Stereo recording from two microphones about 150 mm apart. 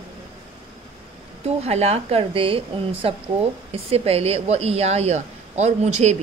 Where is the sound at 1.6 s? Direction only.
45° right (ahead or behind).